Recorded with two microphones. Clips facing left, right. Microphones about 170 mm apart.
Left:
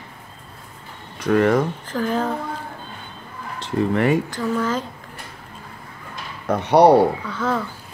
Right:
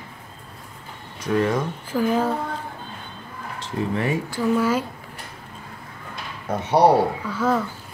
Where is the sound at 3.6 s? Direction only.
65° left (ahead or behind).